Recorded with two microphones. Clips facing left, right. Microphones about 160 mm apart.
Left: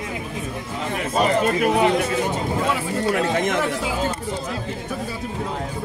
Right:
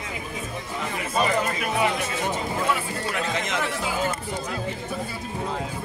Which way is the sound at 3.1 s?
55° left (ahead or behind).